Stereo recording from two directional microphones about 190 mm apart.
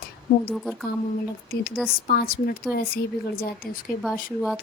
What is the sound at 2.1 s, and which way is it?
Speech, 50° left (ahead or behind).